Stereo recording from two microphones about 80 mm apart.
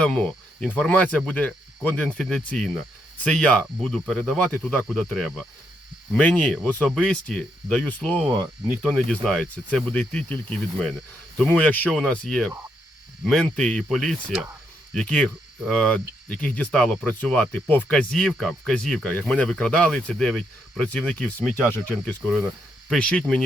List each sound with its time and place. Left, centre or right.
0.0 s speech: centre
6.8 s speech: centre
8.9 s speech: centre
11.4 s speech: left
13.8 s speech: centre
14.9 s speech: centre